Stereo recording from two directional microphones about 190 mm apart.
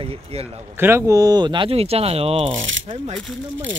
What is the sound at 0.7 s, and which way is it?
Speech, 10° right (ahead or behind).